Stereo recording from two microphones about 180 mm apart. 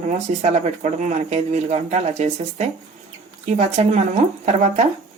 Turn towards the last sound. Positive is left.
turn(degrees=-40)  # may be behind; listen again after turning